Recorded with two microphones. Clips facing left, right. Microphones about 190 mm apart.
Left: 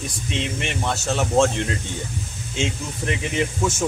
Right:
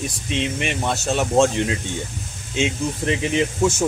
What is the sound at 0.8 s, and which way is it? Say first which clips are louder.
Speech: right 1 dB; 15° right (ahead or behind).